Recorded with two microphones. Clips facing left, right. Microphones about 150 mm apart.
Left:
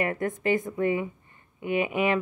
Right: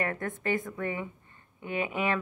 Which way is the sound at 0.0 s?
15° left (ahead or behind).